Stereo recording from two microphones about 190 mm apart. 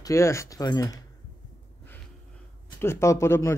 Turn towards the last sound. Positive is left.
turn(degrees=15)  # may be behind; listen again after turning